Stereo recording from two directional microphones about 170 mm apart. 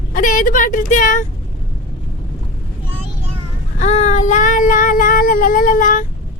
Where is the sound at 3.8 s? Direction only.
45° left (ahead or behind).